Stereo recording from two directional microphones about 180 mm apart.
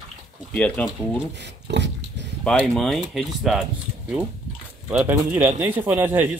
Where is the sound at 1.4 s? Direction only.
75° right (ahead or behind).